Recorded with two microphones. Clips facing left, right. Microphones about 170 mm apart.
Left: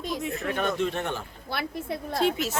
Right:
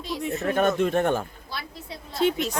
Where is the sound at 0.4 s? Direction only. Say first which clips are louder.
Right 6 dB; 40° right (ahead or behind).